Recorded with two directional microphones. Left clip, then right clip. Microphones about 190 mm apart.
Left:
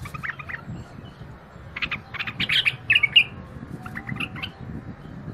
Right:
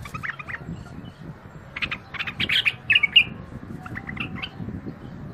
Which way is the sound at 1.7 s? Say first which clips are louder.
Even; 20° right (ahead or behind).